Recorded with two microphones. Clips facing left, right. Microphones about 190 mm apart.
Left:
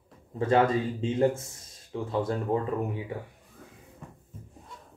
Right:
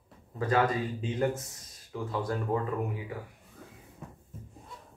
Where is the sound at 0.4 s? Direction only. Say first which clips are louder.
Left 4 dB; 25° left (ahead or behind).